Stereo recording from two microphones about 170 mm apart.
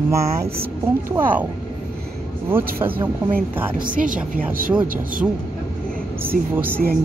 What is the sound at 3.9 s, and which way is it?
Speech, 50° right (ahead or behind).